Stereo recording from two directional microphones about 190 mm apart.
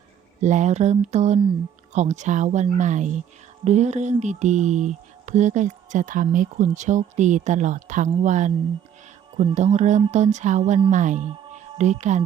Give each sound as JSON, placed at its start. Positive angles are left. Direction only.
{"t": 0.4, "sound": "a woman's voice", "side_deg": -40}
{"t": 9.3, "sound": "speech", "side_deg": -25}
{"t": 9.6, "sound": "a woman's voice", "side_deg": -35}